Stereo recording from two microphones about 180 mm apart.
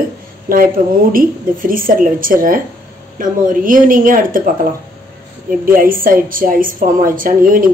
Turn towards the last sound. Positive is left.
turn(degrees=-50)  # may be behind; listen again after turning